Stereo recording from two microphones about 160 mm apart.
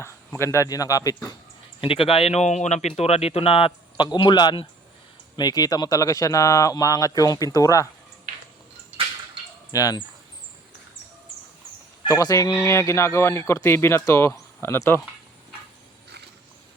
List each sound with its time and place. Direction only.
0.3 s speech: 15° left (ahead or behind)
1.8 s speech: 35° left (ahead or behind)
9.7 s speech: 20° left (ahead or behind)
12.0 s speech: 20° left (ahead or behind)